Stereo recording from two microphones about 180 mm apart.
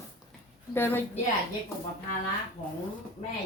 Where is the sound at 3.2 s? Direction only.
45° left (ahead or behind).